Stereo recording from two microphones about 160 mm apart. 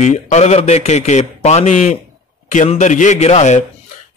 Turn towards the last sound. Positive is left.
turn(degrees=45)  # may be behind; listen again after turning